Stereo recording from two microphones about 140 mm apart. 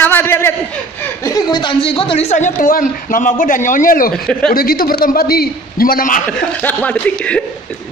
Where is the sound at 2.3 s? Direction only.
65° left (ahead or behind); by 6.2 s 85° left.